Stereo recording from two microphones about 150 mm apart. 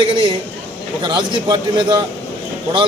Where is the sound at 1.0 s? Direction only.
30° right (ahead or behind).